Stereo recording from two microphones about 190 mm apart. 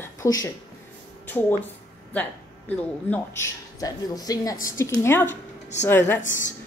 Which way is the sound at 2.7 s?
10° left (ahead or behind).